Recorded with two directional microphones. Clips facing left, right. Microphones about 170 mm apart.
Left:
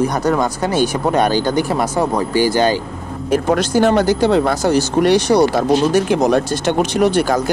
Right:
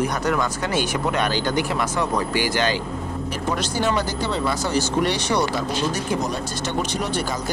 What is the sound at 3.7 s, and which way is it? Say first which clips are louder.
Speech: left 11 dB; 50° left (ahead or behind).